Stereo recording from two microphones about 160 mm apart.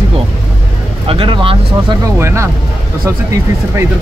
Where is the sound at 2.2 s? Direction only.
15° right (ahead or behind).